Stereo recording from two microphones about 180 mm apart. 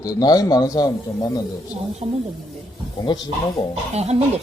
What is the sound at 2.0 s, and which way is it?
Speech, 40° right (ahead or behind).